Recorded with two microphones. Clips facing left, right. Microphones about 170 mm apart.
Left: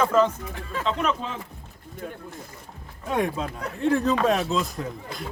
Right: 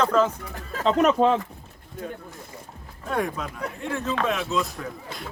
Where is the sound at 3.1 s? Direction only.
20° left (ahead or behind).